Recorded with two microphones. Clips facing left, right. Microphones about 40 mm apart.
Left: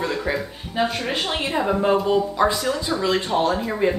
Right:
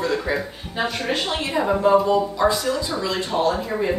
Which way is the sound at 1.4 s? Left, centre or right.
Centre.